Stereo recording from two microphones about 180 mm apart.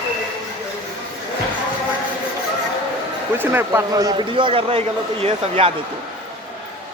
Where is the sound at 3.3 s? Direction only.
10° right (ahead or behind); by 5.7 s 30° right (ahead or behind).